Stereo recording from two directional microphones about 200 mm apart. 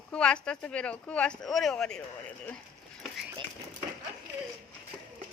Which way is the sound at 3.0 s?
Centre (ahead or behind).